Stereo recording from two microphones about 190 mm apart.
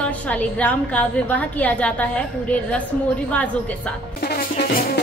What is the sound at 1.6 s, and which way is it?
Speech, 10° left (ahead or behind).